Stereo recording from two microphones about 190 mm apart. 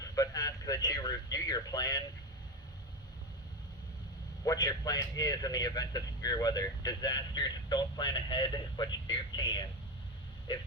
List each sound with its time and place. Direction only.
0.0 s speech: 20° left (ahead or behind)
4.4 s a man's voice: 20° left (ahead or behind)